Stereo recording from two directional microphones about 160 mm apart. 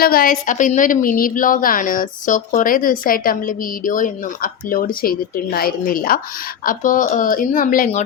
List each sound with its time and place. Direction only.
0.0 s a woman's voice: 65° left (ahead or behind)